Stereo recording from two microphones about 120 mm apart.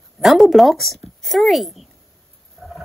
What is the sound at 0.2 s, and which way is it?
Speech, centre (ahead or behind).